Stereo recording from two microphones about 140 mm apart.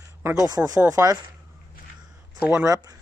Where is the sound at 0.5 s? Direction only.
25° right (ahead or behind).